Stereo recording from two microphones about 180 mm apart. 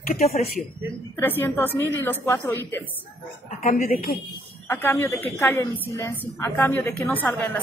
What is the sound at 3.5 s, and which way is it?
Speech, 50° left (ahead or behind).